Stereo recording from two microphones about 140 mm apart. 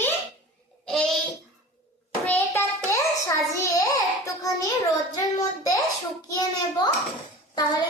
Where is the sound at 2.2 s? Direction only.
15° left (ahead or behind).